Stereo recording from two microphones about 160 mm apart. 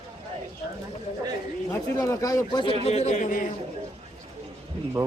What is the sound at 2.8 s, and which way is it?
Speech, 45° left (ahead or behind).